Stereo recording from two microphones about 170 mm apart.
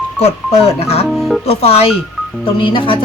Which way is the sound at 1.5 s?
35° left (ahead or behind).